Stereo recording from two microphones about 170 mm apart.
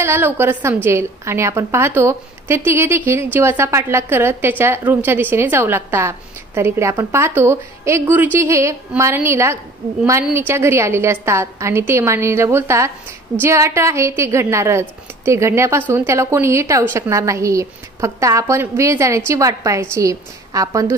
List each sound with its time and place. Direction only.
0.0 s a woman's voice: 15° right (ahead or behind)